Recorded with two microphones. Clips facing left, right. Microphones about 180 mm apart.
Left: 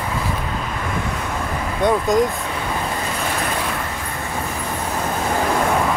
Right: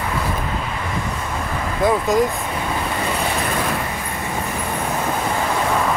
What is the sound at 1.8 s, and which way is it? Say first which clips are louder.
Speech: even; centre (ahead or behind).